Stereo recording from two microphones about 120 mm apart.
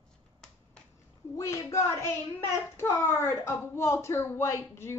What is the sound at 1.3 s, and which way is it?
Speech, 25° left (ahead or behind).